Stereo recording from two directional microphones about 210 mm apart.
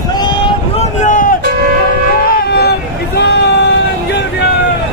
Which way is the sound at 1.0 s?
40° left (ahead or behind).